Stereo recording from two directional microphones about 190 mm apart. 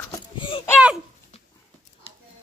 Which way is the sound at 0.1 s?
25° left (ahead or behind).